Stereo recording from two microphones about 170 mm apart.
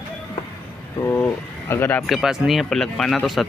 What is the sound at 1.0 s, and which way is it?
Speech, 15° left (ahead or behind).